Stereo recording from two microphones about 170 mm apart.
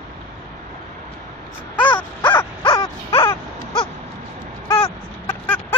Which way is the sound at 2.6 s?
30° left (ahead or behind).